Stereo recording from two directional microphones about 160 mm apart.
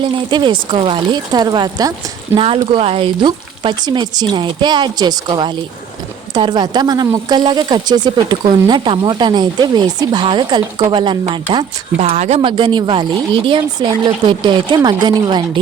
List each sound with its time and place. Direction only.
0.0 s speech: 30° right (ahead or behind)
11.9 s speech: 45° right (ahead or behind)
12.4 s speech: 30° right (ahead or behind)